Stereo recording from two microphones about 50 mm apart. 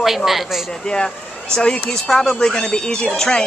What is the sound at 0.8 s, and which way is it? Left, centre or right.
Speech, centre.